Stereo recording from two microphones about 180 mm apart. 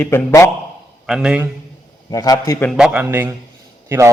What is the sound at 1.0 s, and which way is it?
Speech, 5° right (ahead or behind).